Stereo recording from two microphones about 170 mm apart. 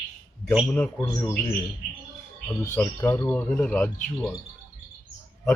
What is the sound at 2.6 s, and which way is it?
Speech, 10° left (ahead or behind).